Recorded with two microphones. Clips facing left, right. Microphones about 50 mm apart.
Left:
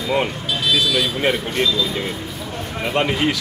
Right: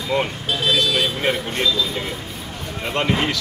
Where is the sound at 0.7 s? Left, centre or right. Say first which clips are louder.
Left 1 dB; right.